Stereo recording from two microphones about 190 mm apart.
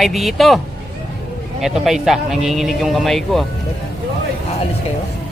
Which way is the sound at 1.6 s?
Centre (ahead or behind).